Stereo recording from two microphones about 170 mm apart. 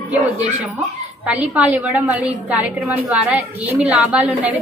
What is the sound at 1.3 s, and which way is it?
A woman's voice, 10° right (ahead or behind).